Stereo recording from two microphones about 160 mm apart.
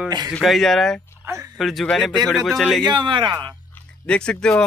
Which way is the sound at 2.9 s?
30° right (ahead or behind).